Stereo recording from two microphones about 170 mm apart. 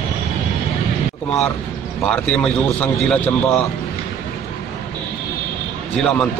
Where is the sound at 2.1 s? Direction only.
5° left (ahead or behind).